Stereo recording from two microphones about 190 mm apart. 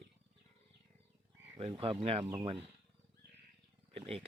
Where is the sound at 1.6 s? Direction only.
30° right (ahead or behind).